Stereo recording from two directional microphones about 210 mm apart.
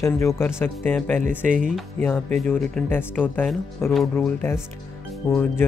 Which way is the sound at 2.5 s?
5° left (ahead or behind).